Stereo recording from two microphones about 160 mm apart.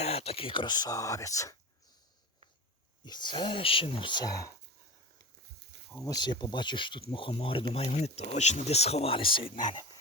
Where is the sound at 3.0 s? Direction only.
25° left (ahead or behind).